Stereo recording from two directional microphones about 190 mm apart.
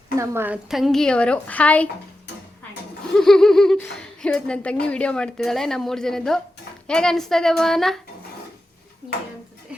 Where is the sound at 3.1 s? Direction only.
5° left (ahead or behind).